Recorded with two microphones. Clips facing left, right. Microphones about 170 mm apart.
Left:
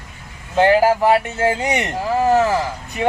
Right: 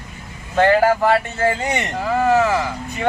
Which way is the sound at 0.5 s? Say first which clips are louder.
Left 1 dB; 15° left (ahead or behind).